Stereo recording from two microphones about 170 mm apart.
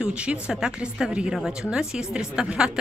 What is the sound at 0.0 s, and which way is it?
A woman's voice, 5° right (ahead or behind).